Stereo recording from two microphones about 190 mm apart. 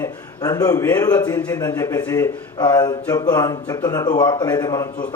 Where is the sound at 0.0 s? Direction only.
20° left (ahead or behind).